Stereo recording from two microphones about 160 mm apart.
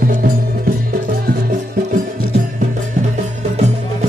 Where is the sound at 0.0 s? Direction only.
60° right (ahead or behind).